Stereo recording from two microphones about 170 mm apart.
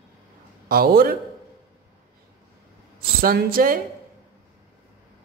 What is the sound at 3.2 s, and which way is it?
Speech, 60° right (ahead or behind).